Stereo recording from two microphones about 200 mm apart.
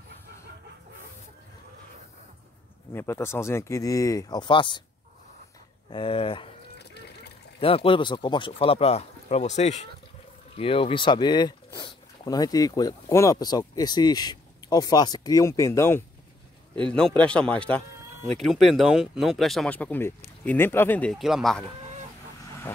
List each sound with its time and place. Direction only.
2.9 s speech: 10° left (ahead or behind)
5.9 s speech: 25° left (ahead or behind)
6.8 s water: 55° left (ahead or behind)
7.6 s speech: 25° left (ahead or behind)
10.5 s speech: 30° left (ahead or behind); by 21.6 s centre (ahead or behind)